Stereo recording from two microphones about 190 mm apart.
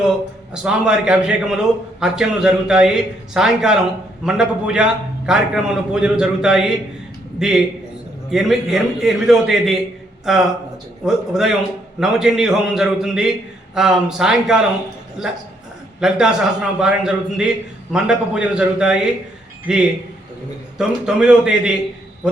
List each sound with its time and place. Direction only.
0.5 s a man's voice: 5° right (ahead or behind)
16.0 s a man's voice: 5° right (ahead or behind)
20.7 s a man's voice: 5° right (ahead or behind)